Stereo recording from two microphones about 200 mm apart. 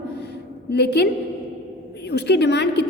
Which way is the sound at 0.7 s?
55° left (ahead or behind).